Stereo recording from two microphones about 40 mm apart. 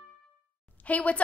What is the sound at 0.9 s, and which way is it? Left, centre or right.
Speech, left.